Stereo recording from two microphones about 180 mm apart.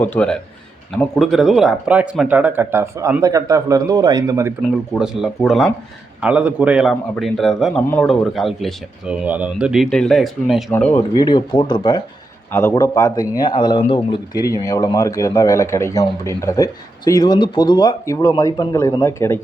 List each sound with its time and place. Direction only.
0.0 s a man's voice: 10° left (ahead or behind); by 4.5 s 15° right (ahead or behind)
4.9 s a man's voice: 5° right (ahead or behind)
11.1 s a man's voice: 20° left (ahead or behind)